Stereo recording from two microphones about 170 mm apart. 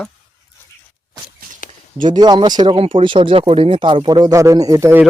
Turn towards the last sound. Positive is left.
turn(degrees=-15)  # may be behind; listen again after turning